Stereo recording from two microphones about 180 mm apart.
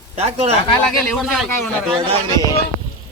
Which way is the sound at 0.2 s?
35° right (ahead or behind).